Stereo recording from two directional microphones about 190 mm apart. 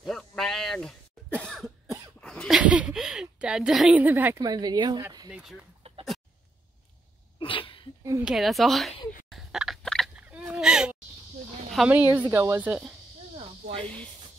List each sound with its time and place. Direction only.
0.0 s cough: centre (ahead or behind); by 5.0 s 20° right (ahead or behind)
5.3 s a woman's voice: centre (ahead or behind)
7.3 s sneeze: 25° left (ahead or behind)
8.0 s a woman's voice: 15° right (ahead or behind)
8.3 s a woman's voice: centre (ahead or behind)
9.3 s a sound: centre (ahead or behind)
11.7 s a woman's voice: 5° right (ahead or behind)
13.7 s speech: 5° left (ahead or behind)